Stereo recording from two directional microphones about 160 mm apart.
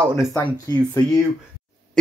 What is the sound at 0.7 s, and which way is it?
Speech, 25° left (ahead or behind).